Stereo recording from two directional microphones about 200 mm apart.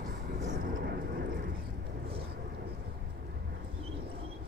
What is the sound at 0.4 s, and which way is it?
Vehicle, 45° right (ahead or behind).